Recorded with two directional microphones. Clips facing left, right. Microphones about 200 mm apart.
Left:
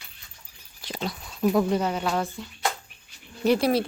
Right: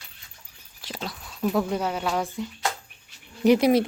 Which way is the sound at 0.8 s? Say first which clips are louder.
Left 3 dB; centre (ahead or behind).